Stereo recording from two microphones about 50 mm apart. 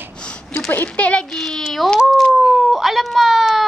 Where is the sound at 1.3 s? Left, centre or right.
Centre.